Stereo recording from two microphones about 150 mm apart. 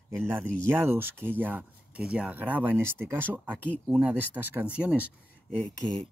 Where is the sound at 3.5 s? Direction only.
10° left (ahead or behind).